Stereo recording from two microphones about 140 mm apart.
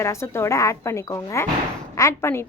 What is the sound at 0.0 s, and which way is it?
Speech, 20° left (ahead or behind).